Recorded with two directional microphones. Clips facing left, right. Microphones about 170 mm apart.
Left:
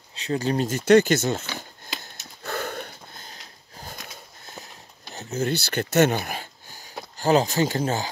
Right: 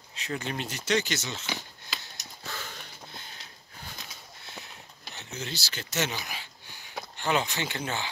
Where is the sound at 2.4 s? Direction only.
55° left (ahead or behind).